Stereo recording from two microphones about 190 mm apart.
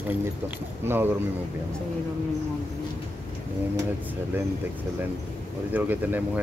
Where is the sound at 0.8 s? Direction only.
10° right (ahead or behind).